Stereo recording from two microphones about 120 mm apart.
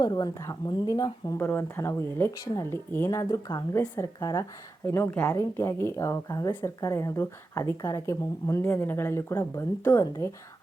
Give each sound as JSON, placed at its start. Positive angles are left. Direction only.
{"t": 0.0, "sound": "a woman's voice", "side_deg": 30}
{"t": 1.4, "sound": "speech", "side_deg": 20}